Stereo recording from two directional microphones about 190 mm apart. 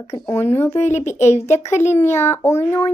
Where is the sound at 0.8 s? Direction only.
40° left (ahead or behind).